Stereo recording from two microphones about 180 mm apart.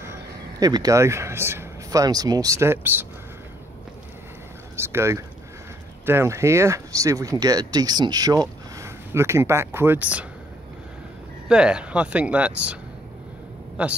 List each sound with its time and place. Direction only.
0.0 s speech: 15° right (ahead or behind)
4.7 s speech: 15° right (ahead or behind)
11.4 s speech: 5° right (ahead or behind)
13.8 s a man's voice: 5° right (ahead or behind)